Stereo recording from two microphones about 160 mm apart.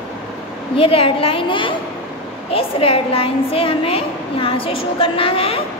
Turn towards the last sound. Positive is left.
turn(degrees=35)  # may be behind; listen again after turning